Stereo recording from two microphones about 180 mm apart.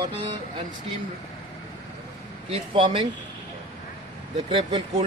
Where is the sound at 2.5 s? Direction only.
30° right (ahead or behind).